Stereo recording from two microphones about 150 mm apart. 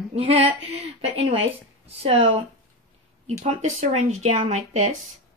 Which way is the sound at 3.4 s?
50° right (ahead or behind).